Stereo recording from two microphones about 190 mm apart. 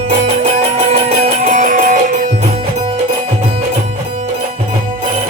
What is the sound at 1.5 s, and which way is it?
Music, 45° right (ahead or behind).